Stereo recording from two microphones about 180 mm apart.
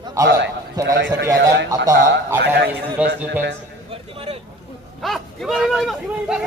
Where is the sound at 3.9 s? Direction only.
30° right (ahead or behind).